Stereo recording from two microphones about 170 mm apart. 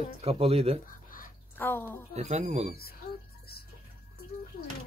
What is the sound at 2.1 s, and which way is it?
Speech, 40° right (ahead or behind).